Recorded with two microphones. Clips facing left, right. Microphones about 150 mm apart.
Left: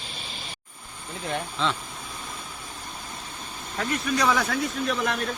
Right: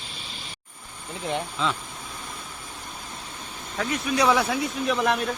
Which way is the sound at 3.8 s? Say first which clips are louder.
Right 2 dB; 5° right (ahead or behind).